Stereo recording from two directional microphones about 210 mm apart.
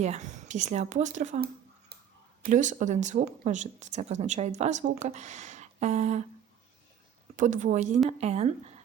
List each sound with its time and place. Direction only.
0.0 s speech: 35° right (ahead or behind)
7.3 s speech: 35° right (ahead or behind)